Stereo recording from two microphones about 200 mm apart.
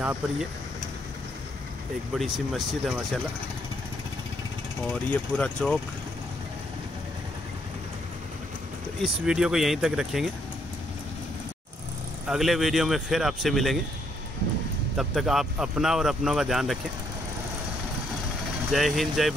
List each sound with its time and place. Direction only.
0.0 s speech: 10° right (ahead or behind)
2.1 s speech: centre (ahead or behind)
5.1 s speech: 5° left (ahead or behind)
9.0 s speech: 5° right (ahead or behind)
12.3 s speech: centre (ahead or behind)
15.0 s speech: centre (ahead or behind)
18.7 s speech: centre (ahead or behind)